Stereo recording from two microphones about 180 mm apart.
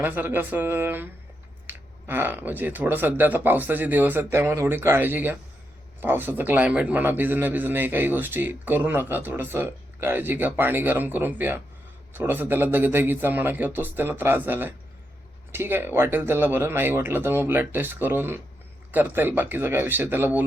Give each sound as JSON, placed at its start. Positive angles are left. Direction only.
{"t": 0.0, "sound": "a man's voice", "side_deg": -10}